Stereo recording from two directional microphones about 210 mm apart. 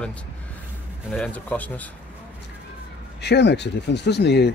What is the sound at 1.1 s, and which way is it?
Speech, 5° left (ahead or behind).